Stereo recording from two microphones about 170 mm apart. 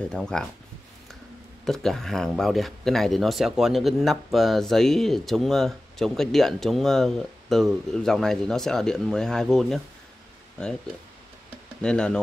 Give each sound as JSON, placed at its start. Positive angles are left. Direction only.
{"t": 0.1, "sound": "speech", "side_deg": 5}
{"t": 1.6, "sound": "speech", "side_deg": 0}
{"t": 11.8, "sound": "speech", "side_deg": 5}